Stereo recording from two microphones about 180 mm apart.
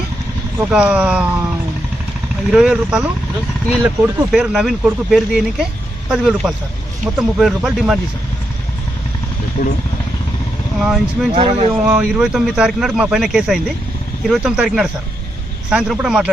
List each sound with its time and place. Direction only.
0.7 s speech: 5° right (ahead or behind)
2.5 s speech: 5° right (ahead or behind)
9.6 s speech: 50° left (ahead or behind)
10.8 s speech: centre (ahead or behind)
11.3 s speech: 35° right (ahead or behind)
11.9 s speech: 5° right (ahead or behind)